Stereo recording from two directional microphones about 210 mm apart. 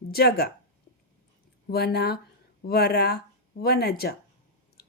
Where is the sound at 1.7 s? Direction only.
50° left (ahead or behind).